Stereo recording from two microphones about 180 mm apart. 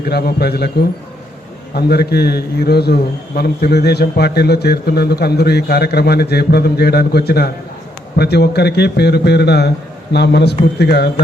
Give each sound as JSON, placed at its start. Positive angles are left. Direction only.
{"t": 0.0, "sound": "a man's voice", "side_deg": 60}